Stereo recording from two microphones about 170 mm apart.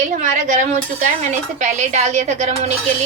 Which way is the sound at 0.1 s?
45° right (ahead or behind).